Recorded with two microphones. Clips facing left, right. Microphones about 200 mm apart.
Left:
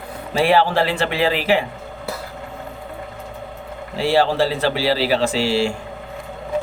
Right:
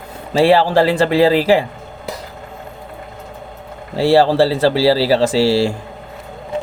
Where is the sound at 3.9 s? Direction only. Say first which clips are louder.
Right 5 dB; 35° right (ahead or behind).